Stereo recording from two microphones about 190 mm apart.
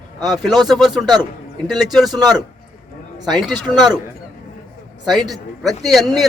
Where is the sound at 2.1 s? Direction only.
20° right (ahead or behind).